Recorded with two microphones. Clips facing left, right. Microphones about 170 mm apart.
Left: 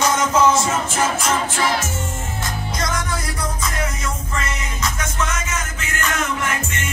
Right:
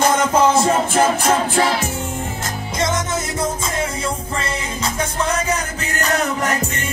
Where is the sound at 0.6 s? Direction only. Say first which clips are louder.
Right 5 dB; 55° right (ahead or behind).